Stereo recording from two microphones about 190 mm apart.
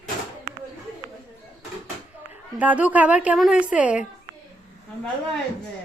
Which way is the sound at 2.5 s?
10° right (ahead or behind).